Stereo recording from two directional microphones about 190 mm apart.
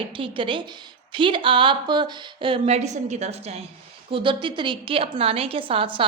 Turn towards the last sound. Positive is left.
turn(degrees=-25)  # may be behind; listen again after turning